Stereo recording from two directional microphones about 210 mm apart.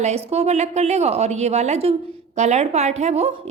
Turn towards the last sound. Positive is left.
turn(degrees=-30)  # may be behind; listen again after turning